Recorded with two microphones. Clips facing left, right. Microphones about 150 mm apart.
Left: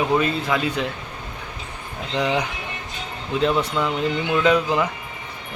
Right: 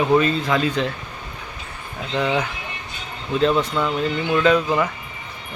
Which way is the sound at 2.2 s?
15° left (ahead or behind).